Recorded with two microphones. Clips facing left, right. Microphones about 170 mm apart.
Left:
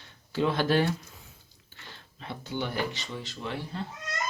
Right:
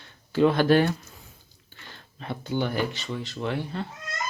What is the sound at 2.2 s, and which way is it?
Speech, 50° right (ahead or behind).